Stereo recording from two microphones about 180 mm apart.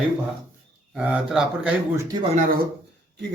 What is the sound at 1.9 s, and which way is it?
Speech, 20° right (ahead or behind).